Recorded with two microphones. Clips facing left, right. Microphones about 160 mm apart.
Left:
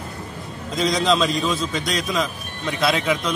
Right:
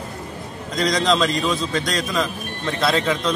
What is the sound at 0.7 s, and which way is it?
A man's voice, 20° left (ahead or behind).